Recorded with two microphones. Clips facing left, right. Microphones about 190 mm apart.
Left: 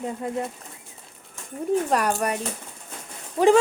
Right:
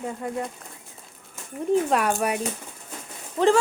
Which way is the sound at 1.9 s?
Centre (ahead or behind).